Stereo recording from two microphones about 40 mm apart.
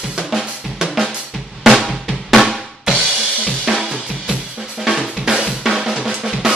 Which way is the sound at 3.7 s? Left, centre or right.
Centre.